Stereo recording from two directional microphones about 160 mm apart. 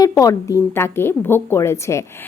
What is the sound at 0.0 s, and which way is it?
A woman's voice, 20° left (ahead or behind).